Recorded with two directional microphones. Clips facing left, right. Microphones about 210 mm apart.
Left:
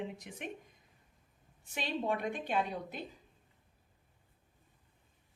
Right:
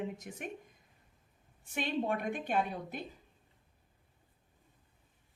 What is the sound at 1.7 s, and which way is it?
A woman's voice, 50° right (ahead or behind).